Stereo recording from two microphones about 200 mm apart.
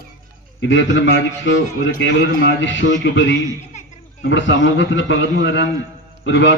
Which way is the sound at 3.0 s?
65° left (ahead or behind).